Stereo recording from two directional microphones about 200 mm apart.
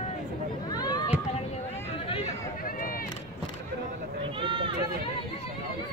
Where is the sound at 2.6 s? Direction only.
45° left (ahead or behind).